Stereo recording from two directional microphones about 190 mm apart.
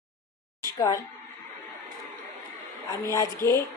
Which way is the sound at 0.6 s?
15° left (ahead or behind).